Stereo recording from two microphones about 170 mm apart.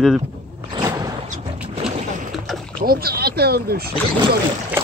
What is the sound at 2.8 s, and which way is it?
Speech, 65° right (ahead or behind).